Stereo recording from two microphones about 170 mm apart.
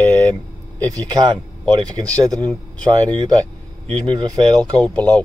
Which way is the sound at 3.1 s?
25° right (ahead or behind).